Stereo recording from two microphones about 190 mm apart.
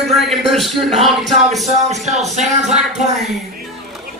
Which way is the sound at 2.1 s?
35° right (ahead or behind).